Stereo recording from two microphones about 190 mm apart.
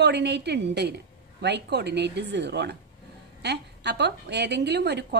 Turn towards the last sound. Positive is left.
turn(degrees=-60)  # may be behind; listen again after turning